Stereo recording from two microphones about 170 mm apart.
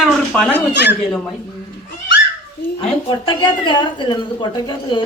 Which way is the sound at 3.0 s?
30° left (ahead or behind).